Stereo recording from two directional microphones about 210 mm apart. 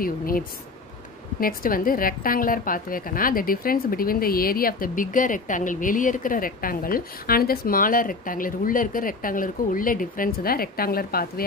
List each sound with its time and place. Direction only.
0.0 s a woman's voice: 45° left (ahead or behind)